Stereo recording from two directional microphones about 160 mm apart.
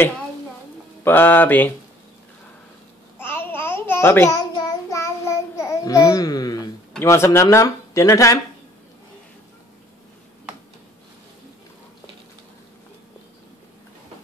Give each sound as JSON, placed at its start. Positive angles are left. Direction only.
{"t": 1.0, "sound": "mantra", "side_deg": 10}
{"t": 3.2, "sound": "babbling", "side_deg": 15}
{"t": 7.0, "sound": "speech", "side_deg": 15}